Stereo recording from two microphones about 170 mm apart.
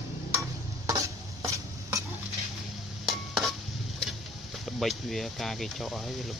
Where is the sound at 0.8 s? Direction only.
20° right (ahead or behind).